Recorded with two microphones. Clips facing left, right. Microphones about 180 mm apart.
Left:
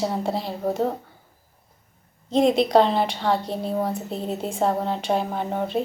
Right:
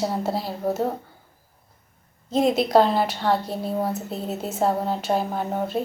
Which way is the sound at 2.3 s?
5° right (ahead or behind).